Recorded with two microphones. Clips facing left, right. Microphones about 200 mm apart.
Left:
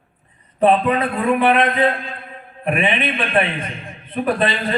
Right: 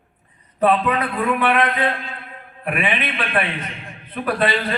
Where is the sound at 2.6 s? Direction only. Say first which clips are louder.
Left 4 dB; 25° left (ahead or behind).